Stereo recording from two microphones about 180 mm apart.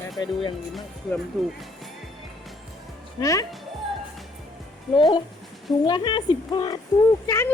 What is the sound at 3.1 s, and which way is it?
Speech, 20° left (ahead or behind).